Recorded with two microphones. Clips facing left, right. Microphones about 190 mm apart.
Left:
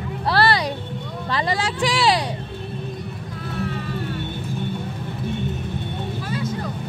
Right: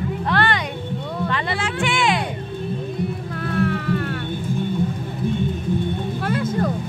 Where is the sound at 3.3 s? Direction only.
60° right (ahead or behind).